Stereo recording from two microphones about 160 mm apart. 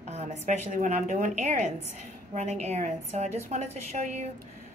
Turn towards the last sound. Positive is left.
turn(degrees=-45)  # may be behind; listen again after turning